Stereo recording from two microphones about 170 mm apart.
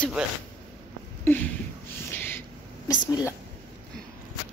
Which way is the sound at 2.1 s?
15° left (ahead or behind).